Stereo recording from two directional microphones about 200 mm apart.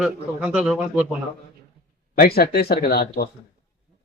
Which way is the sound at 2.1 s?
50° left (ahead or behind).